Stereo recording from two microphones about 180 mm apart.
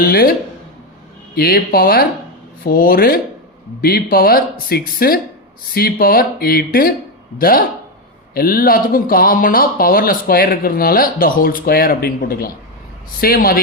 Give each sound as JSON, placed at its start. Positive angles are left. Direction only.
{"t": 0.0, "sound": "speech", "side_deg": 55}
{"t": 1.4, "sound": "speech", "side_deg": 55}